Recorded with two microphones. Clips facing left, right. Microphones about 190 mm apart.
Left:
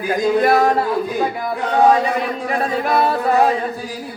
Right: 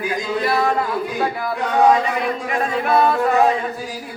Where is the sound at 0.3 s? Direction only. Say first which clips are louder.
Left 5 dB; 50° left (ahead or behind).